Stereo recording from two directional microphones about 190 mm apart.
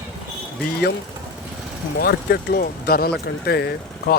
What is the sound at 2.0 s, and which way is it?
Speech, 55° left (ahead or behind).